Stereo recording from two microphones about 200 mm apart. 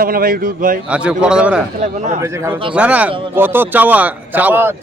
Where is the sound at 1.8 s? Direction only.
35° right (ahead or behind).